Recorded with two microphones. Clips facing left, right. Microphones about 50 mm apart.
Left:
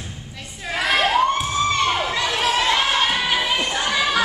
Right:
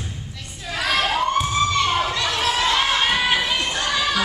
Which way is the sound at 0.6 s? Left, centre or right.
Centre.